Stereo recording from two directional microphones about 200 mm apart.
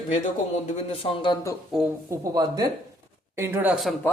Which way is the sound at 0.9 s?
25° left (ahead or behind).